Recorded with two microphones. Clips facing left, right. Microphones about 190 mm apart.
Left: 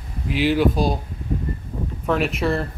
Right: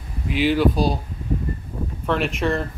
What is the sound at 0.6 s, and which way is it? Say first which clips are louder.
Speech: even; 45° left (ahead or behind).